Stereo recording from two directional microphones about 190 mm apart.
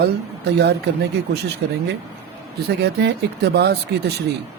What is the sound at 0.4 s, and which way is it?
Speech, 60° right (ahead or behind).